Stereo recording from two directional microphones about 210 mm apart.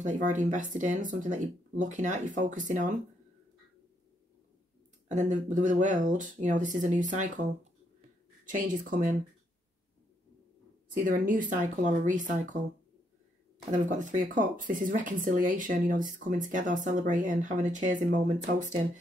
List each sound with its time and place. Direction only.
0.0 s speech: 35° right (ahead or behind)
5.0 s speech: 35° right (ahead or behind)
8.5 s speech: 40° right (ahead or behind)
11.0 s speech: 40° right (ahead or behind)
13.7 s speech: 35° right (ahead or behind)